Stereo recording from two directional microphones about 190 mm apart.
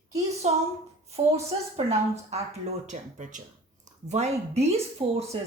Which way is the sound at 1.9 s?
35° right (ahead or behind).